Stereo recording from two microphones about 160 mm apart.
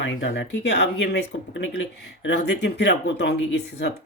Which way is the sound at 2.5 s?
90° left.